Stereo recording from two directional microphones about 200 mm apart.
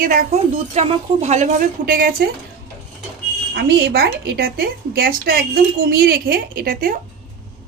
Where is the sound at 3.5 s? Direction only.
55° right (ahead or behind).